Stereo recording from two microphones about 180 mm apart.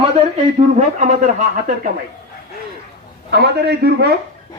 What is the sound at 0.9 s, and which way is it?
Speech, 45° right (ahead or behind).